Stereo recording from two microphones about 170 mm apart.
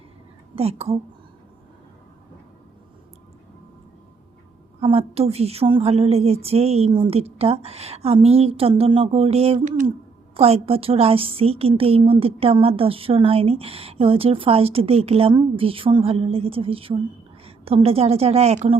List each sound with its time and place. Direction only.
0.5 s a woman's voice: 35° right (ahead or behind)
4.8 s a woman's voice: 35° right (ahead or behind)